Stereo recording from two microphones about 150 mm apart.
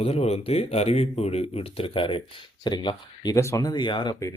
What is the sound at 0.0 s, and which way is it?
Speech, 45° left (ahead or behind).